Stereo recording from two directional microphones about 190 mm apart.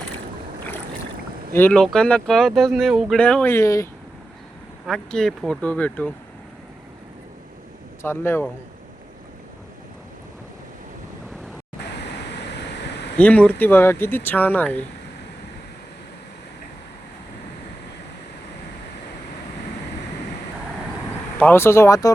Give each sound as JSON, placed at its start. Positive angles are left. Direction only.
{"t": 1.5, "sound": "speech", "side_deg": 10}
{"t": 4.9, "sound": "speech", "side_deg": 0}
{"t": 8.0, "sound": "speech", "side_deg": 10}
{"t": 12.0, "sound": "a sound", "side_deg": 65}
{"t": 13.1, "sound": "speech", "side_deg": 5}
{"t": 21.3, "sound": "speech", "side_deg": 10}